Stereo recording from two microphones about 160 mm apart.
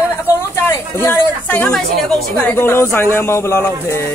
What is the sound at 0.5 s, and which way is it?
A woman's voice, 15° left (ahead or behind).